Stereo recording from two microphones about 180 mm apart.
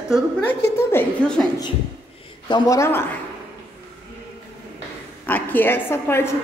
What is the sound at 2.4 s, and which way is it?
Speech, 20° left (ahead or behind).